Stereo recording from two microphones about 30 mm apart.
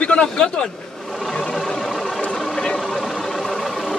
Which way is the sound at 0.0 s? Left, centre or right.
Left.